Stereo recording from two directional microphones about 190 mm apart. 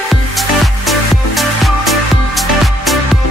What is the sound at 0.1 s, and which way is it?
Music, centre (ahead or behind).